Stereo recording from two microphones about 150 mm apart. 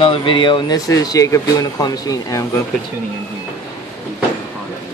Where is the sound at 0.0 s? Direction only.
35° left (ahead or behind).